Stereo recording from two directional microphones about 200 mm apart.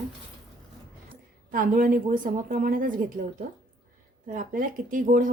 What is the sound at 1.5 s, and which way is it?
Speech, 45° right (ahead or behind).